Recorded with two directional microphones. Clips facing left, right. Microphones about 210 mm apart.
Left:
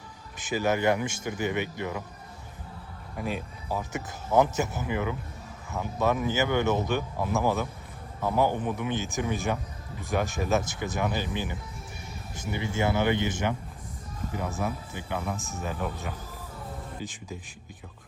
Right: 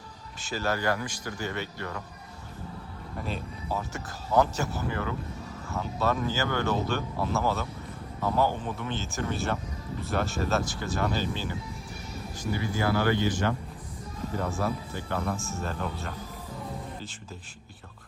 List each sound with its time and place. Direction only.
0.3 s speech: 15° left (ahead or behind)
3.2 s speech: 10° left (ahead or behind)